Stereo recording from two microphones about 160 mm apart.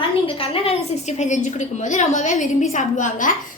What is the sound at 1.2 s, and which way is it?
A woman's voice, 50° left (ahead or behind).